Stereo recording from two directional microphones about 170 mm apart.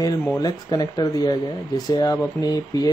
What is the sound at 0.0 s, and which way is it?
Speech, 20° left (ahead or behind).